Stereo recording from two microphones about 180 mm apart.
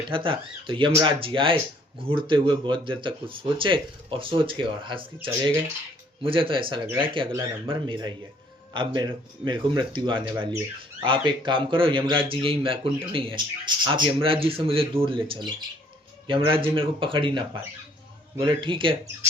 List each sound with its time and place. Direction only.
0.1 s speech: 30° right (ahead or behind)